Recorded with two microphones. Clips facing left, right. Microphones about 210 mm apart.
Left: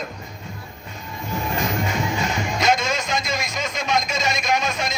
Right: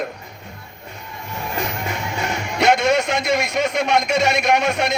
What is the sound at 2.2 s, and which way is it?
Music, 65° right (ahead or behind).